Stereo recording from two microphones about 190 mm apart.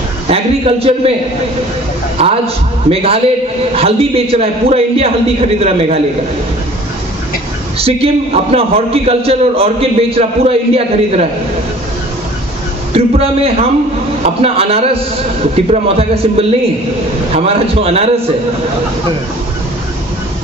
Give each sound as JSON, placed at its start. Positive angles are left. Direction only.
{"t": 0.3, "sound": "a man's voice", "side_deg": -30}
{"t": 2.1, "sound": "a man's voice", "side_deg": -30}
{"t": 7.8, "sound": "a man's voice", "side_deg": -30}
{"t": 12.9, "sound": "a man's voice", "side_deg": -30}